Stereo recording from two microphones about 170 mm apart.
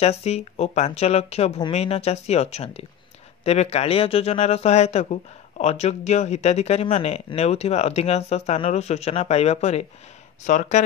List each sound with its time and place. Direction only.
0.0 s speech: 40° left (ahead or behind)